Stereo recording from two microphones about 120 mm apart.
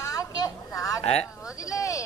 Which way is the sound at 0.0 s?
30° left (ahead or behind).